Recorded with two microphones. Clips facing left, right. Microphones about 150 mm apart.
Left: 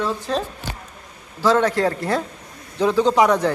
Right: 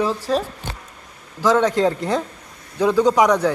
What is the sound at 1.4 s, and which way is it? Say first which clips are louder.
Speech: right 1 dB; 15° right (ahead or behind).